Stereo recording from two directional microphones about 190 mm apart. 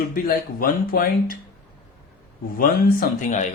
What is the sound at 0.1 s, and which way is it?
Speech, 50° left (ahead or behind).